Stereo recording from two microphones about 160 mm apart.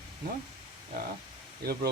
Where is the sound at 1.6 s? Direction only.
75° right (ahead or behind).